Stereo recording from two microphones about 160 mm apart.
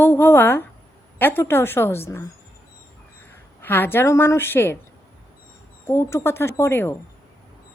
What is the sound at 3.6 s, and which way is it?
A woman's voice, 15° left (ahead or behind).